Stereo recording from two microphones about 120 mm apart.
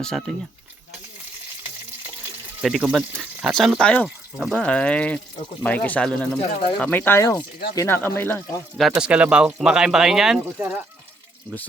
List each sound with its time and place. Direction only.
0.0 s speech: 5° left (ahead or behind)
2.6 s speech: 5° right (ahead or behind)
4.5 s speech: 10° left (ahead or behind)
8.9 s speech: 10° right (ahead or behind)